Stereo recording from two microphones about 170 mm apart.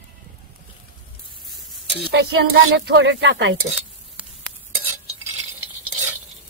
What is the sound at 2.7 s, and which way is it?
Speech, 80° right.